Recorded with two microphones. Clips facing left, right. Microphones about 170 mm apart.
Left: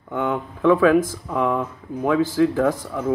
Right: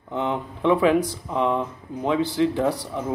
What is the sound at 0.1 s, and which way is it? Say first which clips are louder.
Speech: left 2 dB; 20° right (ahead or behind).